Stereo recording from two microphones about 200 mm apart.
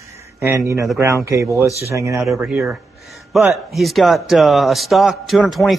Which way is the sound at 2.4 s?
Centre (ahead or behind).